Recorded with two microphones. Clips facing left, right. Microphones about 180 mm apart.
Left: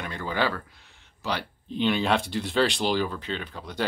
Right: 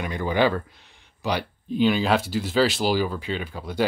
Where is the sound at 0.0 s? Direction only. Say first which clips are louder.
Right 6 dB; 15° right (ahead or behind).